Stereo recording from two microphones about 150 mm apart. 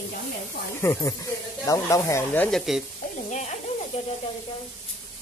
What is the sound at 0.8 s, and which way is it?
Speech, 20° left (ahead or behind).